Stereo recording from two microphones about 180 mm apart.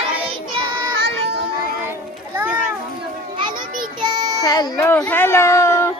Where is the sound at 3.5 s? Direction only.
50° right (ahead or behind).